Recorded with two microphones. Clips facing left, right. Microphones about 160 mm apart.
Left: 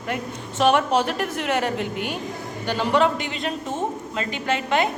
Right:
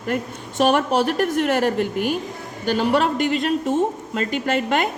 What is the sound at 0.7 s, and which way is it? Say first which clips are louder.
A woman's voice: even; 45° right (ahead or behind).